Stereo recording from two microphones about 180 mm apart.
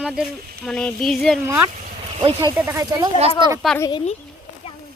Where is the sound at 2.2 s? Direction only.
30° right (ahead or behind).